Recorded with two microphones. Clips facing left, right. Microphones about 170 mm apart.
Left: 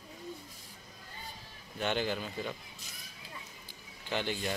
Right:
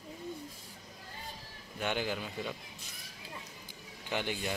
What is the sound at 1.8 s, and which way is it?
Speech, 10° right (ahead or behind).